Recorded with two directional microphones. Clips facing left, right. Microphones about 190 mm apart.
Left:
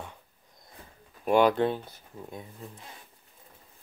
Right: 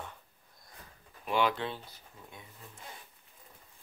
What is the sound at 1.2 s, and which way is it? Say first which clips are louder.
Speech: left 8 dB; 45° left (ahead or behind).